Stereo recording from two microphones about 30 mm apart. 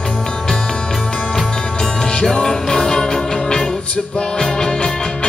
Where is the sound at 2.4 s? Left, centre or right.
Centre.